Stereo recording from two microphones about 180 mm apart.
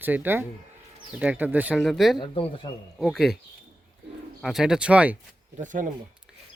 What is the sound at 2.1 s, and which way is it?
Speech, 25° left (ahead or behind).